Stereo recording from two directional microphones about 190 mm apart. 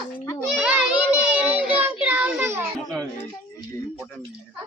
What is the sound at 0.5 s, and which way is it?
Child singing, 5° right (ahead or behind).